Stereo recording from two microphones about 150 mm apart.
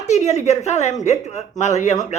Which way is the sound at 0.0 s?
50° left (ahead or behind).